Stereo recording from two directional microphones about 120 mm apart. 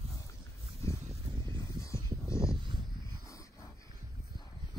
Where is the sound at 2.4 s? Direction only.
45° right (ahead or behind).